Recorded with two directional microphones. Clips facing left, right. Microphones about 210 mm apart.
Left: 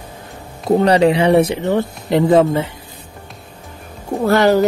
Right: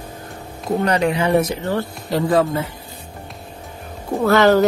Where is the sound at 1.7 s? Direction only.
20° left (ahead or behind).